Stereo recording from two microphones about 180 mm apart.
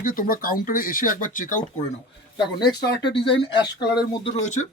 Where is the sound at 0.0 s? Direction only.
55° left (ahead or behind).